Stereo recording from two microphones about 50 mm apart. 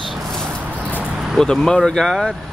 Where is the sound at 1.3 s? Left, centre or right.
Centre.